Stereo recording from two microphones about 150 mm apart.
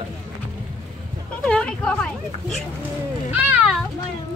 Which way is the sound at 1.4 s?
5° left (ahead or behind).